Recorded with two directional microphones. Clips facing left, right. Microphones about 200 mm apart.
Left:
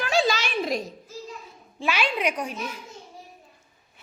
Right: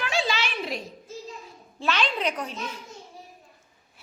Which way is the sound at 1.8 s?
10° left (ahead or behind).